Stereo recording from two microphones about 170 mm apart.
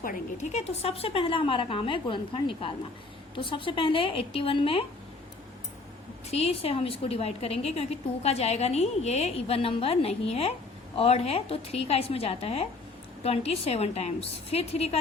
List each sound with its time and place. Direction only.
0.0 s a woman's voice: 50° left (ahead or behind); by 4.9 s 35° left (ahead or behind)
6.3 s a woman's voice: 35° left (ahead or behind)